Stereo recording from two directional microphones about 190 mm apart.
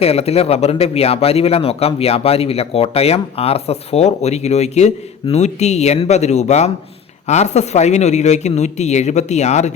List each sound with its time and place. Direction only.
0.0 s speech: 30° left (ahead or behind)